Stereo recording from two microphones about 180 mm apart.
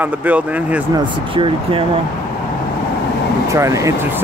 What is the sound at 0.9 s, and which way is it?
Speech, 30° right (ahead or behind).